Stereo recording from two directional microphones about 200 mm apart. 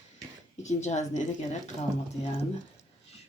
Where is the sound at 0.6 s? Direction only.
35° left (ahead or behind).